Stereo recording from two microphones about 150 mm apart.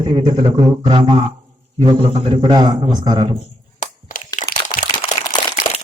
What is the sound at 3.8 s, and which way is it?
Crushing, 60° left (ahead or behind).